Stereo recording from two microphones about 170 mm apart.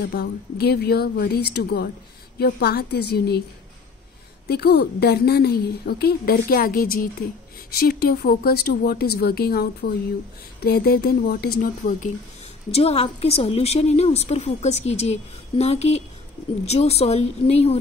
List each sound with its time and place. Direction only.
0.1 s a woman's voice: 70° left (ahead or behind)
4.5 s a woman's voice: 70° left (ahead or behind)
12.7 s a woman's voice: 35° left (ahead or behind)